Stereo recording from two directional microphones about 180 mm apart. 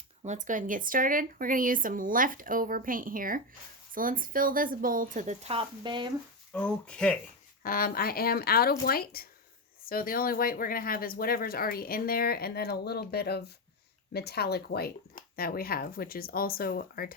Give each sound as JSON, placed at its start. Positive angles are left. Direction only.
{"t": 0.3, "sound": "speech", "side_deg": -45}
{"t": 6.5, "sound": "speech", "side_deg": 5}
{"t": 7.6, "sound": "speech", "side_deg": 55}